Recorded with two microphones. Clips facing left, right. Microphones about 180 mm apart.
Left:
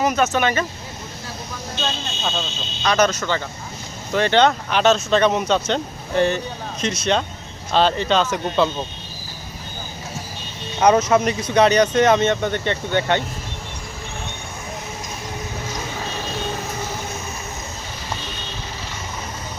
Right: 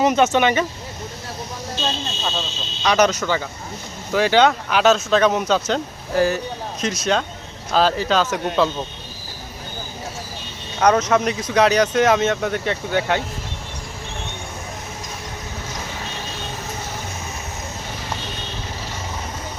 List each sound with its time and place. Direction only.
0.0 s speech: 25° right (ahead or behind)
2.8 s speech: 15° right (ahead or behind)
10.8 s speech: 5° left (ahead or behind)